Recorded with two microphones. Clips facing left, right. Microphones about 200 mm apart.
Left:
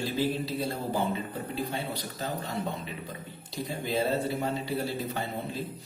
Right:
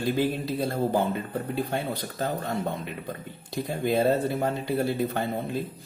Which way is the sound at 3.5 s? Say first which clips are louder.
Right 5 dB; 55° right (ahead or behind).